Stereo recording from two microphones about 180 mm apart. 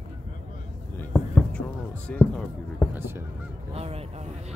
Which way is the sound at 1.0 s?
5° left (ahead or behind).